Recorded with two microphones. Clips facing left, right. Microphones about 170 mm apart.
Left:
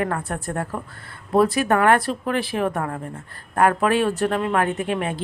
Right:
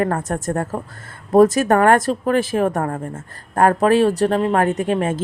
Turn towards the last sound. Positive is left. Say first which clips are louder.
# right 5 dB
turn(degrees=-40)  # may be behind; listen again after turning